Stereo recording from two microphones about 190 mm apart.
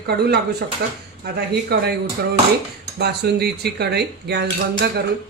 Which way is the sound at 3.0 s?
60° right (ahead or behind).